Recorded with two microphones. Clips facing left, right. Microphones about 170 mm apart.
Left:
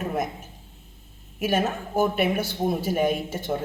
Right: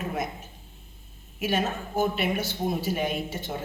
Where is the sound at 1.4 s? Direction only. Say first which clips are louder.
Left 3 dB; 45° left (ahead or behind).